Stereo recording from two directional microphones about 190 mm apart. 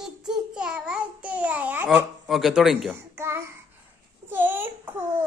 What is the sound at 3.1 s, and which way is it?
Child singing, 15° right (ahead or behind).